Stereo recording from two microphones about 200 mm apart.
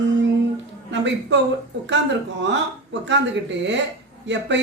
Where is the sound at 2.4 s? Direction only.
65° right (ahead or behind).